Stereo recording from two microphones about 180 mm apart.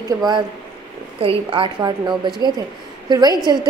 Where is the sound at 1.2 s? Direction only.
30° right (ahead or behind).